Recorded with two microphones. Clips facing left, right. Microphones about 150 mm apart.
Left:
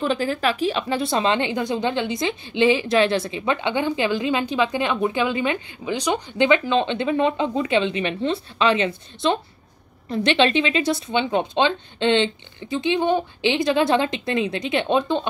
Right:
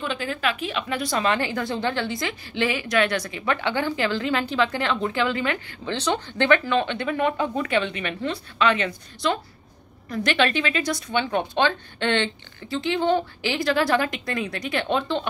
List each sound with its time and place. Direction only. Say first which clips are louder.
0.0 s speech: left 5 dB; 40° left (ahead or behind); by 15.2 s 20° left (ahead or behind)